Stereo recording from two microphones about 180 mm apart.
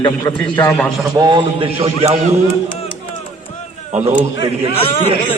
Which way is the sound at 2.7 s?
30° left (ahead or behind).